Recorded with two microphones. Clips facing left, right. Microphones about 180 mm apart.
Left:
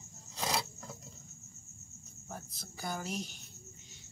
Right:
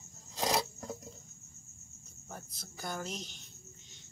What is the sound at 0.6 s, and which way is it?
Filing, 40° right (ahead or behind).